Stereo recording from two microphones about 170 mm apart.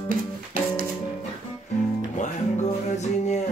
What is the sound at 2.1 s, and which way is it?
Music, 45° left (ahead or behind).